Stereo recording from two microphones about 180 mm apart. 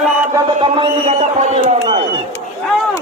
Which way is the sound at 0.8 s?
35° right (ahead or behind).